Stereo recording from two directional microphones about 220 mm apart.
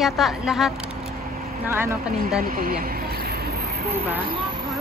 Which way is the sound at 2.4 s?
40° right (ahead or behind).